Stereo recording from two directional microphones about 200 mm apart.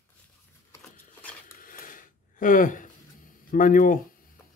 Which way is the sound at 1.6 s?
45° left (ahead or behind).